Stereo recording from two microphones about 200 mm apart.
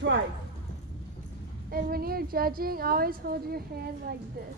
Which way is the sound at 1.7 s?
50° right (ahead or behind).